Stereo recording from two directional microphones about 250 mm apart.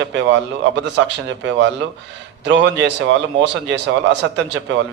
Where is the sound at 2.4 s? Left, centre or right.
Right.